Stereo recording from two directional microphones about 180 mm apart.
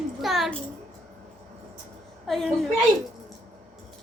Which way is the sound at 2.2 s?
Centre (ahead or behind).